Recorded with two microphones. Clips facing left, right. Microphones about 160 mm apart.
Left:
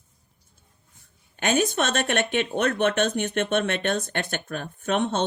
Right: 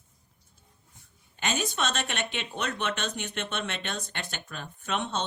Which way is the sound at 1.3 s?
55° left (ahead or behind).